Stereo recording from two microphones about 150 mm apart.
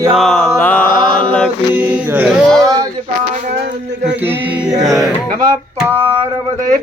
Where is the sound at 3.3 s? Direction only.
85° right.